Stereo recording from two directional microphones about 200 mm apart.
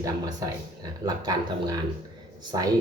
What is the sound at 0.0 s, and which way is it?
Speech, 20° right (ahead or behind).